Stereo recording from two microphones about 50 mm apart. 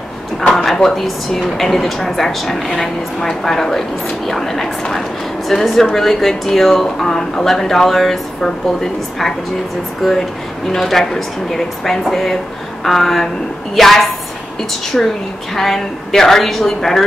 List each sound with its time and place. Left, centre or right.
0.4 s drawer open or close: centre
0.7 s speech: centre
10.0 s speech: centre